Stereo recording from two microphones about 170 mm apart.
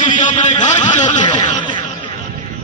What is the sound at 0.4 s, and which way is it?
Speech, 45° left (ahead or behind).